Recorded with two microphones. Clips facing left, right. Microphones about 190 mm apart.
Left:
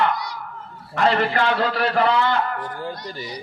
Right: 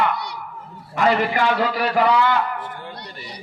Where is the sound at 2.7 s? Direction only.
30° left (ahead or behind).